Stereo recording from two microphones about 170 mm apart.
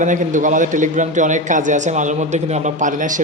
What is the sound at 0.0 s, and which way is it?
A man's voice, 50° right (ahead or behind).